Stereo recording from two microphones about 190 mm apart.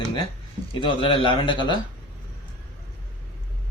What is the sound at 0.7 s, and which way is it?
A man's voice, 25° left (ahead or behind).